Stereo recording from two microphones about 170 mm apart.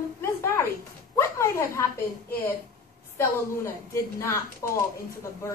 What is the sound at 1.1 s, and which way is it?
Speech, 15° left (ahead or behind).